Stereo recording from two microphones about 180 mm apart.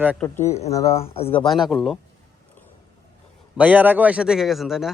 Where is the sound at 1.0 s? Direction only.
35° left (ahead or behind).